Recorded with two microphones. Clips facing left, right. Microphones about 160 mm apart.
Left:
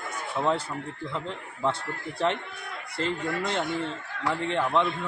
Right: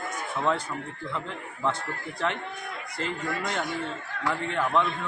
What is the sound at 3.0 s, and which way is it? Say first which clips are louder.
A man's voice: left 3 dB; 30° left (ahead or behind).